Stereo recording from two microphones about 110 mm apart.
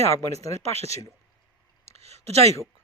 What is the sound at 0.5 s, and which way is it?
Speech, 70° right (ahead or behind).